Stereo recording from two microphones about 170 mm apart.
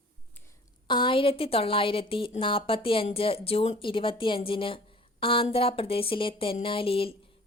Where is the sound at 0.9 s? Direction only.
30° left (ahead or behind).